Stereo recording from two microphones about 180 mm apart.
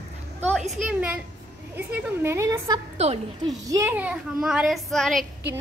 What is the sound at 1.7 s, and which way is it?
A child's voice, 10° right (ahead or behind).